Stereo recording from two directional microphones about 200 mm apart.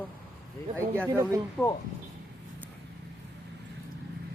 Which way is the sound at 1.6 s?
5° right (ahead or behind).